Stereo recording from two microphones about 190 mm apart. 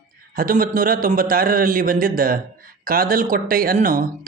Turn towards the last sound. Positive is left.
turn(degrees=-45)  # may be behind; listen again after turning